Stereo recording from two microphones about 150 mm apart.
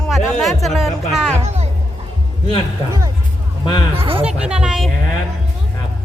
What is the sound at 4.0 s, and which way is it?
Speech, 40° right (ahead or behind).